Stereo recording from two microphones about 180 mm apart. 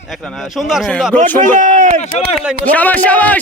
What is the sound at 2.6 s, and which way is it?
Speech, 10° left (ahead or behind).